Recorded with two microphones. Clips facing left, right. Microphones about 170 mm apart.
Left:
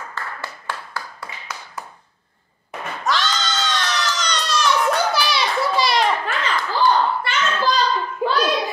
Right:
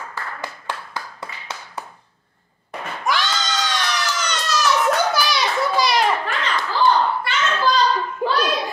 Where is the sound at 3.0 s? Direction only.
10° right (ahead or behind).